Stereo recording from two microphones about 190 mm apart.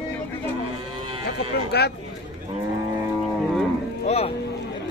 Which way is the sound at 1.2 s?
60° left (ahead or behind).